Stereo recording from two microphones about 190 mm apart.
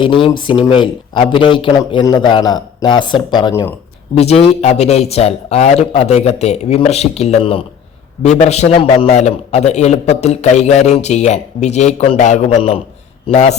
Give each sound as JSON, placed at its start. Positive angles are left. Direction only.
{"t": 0.0, "sound": "speech", "side_deg": 25}
{"t": 4.2, "sound": "a man's voice", "side_deg": 35}